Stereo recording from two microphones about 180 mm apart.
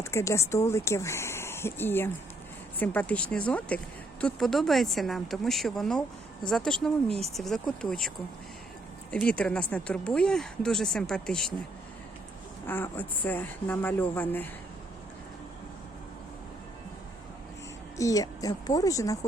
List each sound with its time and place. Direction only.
0.0 s speech: 15° left (ahead or behind)
9.1 s speech: 10° left (ahead or behind)
12.6 s speech: 10° left (ahead or behind)
17.9 s speech: 20° left (ahead or behind)